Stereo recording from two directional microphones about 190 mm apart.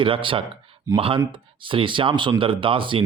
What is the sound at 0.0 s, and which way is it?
Speech, 25° right (ahead or behind).